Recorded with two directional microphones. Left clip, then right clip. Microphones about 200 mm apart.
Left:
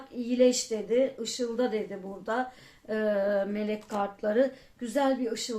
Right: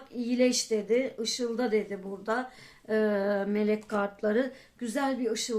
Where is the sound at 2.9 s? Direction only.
40° right (ahead or behind).